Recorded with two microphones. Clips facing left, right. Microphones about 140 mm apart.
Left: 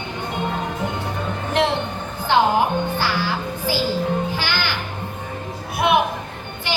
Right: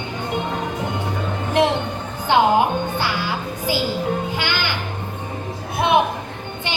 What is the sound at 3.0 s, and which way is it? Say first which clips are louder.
Music: left 1 dB; 20° right (ahead or behind).